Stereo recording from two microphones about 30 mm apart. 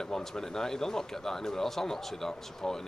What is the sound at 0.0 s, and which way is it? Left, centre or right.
Speech, centre.